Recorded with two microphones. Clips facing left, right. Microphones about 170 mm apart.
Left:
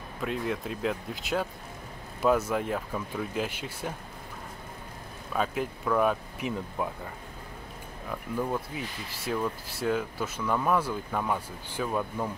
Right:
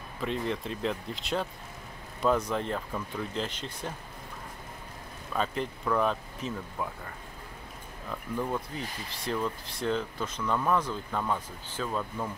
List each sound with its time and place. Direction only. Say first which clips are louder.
0.2 s speech: even; 5° left (ahead or behind)
5.3 s speech: left 1 dB; 5° left (ahead or behind)
6.8 s speech: left 3 dB; 20° left (ahead or behind)
8.1 s speech: left 1 dB; 5° left (ahead or behind)